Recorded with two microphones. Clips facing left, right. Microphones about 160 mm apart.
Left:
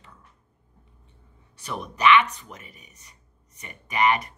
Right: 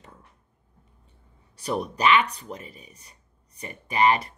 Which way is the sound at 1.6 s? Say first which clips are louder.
Even; 35° right (ahead or behind).